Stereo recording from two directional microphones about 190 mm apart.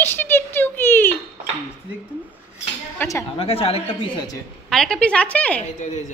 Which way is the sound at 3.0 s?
15° left (ahead or behind).